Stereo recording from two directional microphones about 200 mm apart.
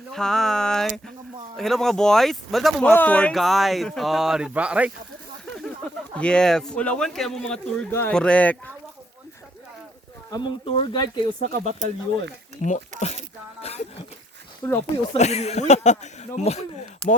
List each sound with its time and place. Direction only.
0.1 s speech: centre (ahead or behind)
6.1 s speech: 5° left (ahead or behind)
10.3 s speech: 25° left (ahead or behind)
11.4 s speech: 35° right (ahead or behind)
13.0 s a sound: 35° left (ahead or behind)
14.6 s speech: 10° left (ahead or behind)
15.1 s speech: 35° left (ahead or behind)
17.0 s speech: 5° left (ahead or behind)